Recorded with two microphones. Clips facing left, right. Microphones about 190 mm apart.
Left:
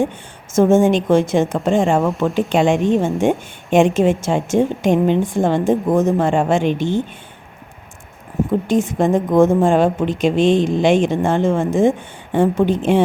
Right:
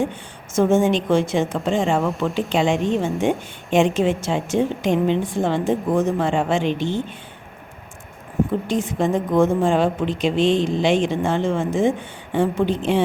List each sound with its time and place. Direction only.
0.5 s a woman's voice: 45° left (ahead or behind)
8.6 s a woman's voice: 50° left (ahead or behind)